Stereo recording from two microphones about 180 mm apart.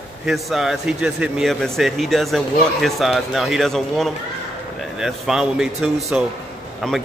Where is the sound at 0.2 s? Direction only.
Centre (ahead or behind).